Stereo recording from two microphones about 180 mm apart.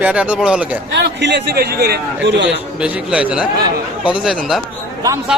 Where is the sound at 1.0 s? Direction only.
70° right (ahead or behind).